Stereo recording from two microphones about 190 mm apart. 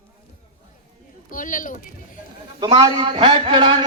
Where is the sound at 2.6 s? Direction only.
25° right (ahead or behind).